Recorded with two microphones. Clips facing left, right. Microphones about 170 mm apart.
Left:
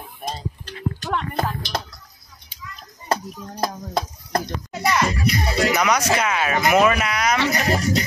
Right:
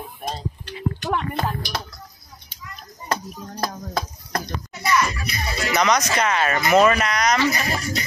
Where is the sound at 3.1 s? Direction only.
25° left (ahead or behind).